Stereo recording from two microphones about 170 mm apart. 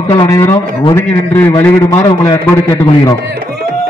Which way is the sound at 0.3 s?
15° left (ahead or behind).